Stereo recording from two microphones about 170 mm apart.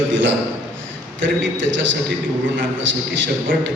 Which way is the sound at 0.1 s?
90° right.